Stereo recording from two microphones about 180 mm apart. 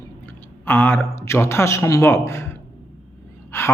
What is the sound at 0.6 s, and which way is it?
A man's voice, 10° left (ahead or behind).